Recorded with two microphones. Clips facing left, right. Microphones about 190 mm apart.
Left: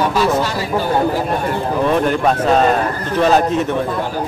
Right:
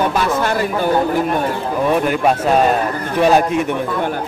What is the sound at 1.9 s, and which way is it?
Speech, 10° right (ahead or behind).